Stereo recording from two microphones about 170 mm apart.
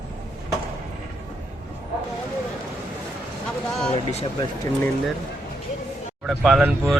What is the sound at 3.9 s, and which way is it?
Speech, 40° left (ahead or behind).